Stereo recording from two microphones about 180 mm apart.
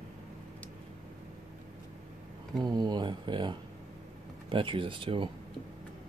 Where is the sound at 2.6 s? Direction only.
25° right (ahead or behind).